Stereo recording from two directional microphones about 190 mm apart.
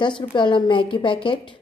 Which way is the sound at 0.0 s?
25° left (ahead or behind).